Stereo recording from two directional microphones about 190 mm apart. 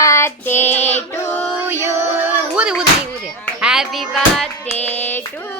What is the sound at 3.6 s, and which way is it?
Hands, 5° right (ahead or behind).